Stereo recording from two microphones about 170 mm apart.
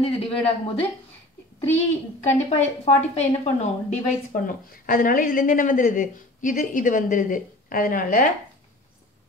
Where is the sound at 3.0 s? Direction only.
40° left (ahead or behind).